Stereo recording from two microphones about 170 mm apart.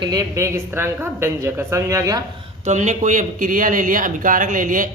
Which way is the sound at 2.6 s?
45° right (ahead or behind).